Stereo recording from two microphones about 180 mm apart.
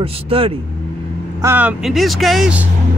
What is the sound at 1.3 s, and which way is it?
Speech, 10° right (ahead or behind).